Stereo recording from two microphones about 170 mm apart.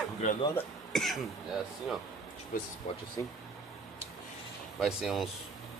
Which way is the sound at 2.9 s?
40° left (ahead or behind).